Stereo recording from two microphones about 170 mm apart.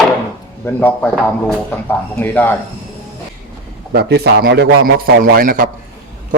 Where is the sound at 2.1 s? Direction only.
10° left (ahead or behind).